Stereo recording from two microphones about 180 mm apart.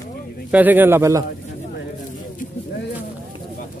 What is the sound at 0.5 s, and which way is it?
Speech, 10° right (ahead or behind).